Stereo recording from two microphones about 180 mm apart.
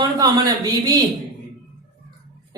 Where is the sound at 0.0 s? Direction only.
20° right (ahead or behind).